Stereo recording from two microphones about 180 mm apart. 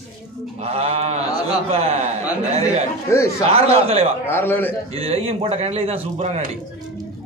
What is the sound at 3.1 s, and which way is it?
Speech, 15° left (ahead or behind).